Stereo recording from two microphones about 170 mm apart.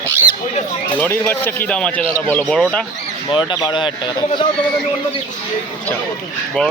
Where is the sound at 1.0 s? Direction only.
10° left (ahead or behind).